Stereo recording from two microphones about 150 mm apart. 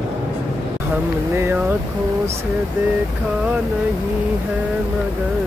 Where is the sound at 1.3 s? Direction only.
15° right (ahead or behind).